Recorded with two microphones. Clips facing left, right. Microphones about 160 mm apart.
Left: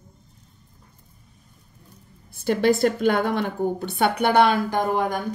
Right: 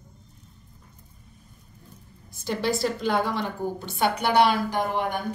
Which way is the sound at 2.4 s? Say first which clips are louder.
Left 7 dB; 55° left (ahead or behind).